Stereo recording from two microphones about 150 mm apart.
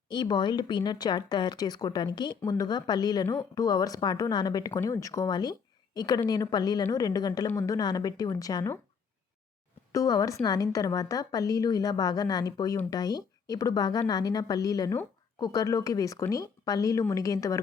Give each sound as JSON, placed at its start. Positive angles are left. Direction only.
{"t": 0.1, "sound": "a woman's voice", "side_deg": 30}
{"t": 9.9, "sound": "a woman's voice", "side_deg": 25}